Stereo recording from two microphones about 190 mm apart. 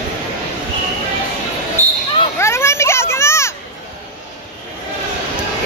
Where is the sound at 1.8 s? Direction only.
15° right (ahead or behind).